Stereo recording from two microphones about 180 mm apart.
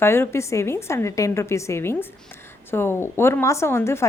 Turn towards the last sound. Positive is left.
turn(degrees=15)  # may be behind; listen again after turning